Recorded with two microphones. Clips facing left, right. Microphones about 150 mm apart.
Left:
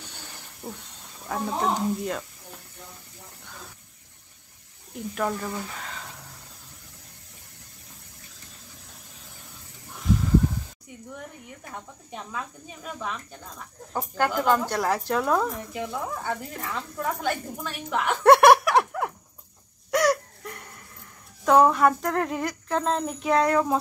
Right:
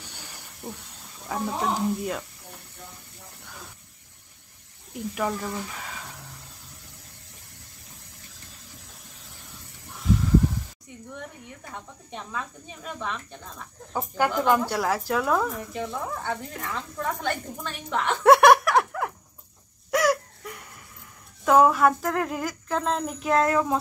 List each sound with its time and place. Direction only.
0.0 s hiss: 10° right (ahead or behind)
0.6 s hiss: centre (ahead or behind)
1.3 s speech: centre (ahead or behind)
4.9 s speech: 5° right (ahead or behind)
8.3 s water: 90° right
9.7 s a sound: 70° right (ahead or behind)
11.7 s speech: 5° left (ahead or behind)
19.9 s a sound: centre (ahead or behind)
21.5 s speech: centre (ahead or behind)